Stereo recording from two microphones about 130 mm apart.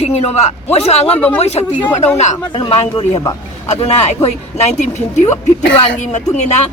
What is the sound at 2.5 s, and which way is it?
Speech, 40° left (ahead or behind).